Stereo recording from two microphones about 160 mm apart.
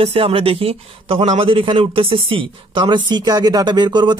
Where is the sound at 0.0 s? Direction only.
35° right (ahead or behind).